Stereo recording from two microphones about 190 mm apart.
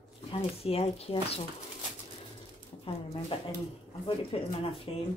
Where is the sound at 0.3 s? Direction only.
30° left (ahead or behind).